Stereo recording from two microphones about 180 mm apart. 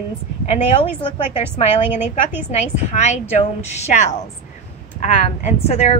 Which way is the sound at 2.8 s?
40° left (ahead or behind).